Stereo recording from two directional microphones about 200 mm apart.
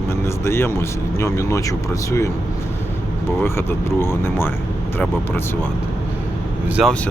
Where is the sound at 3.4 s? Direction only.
10° left (ahead or behind).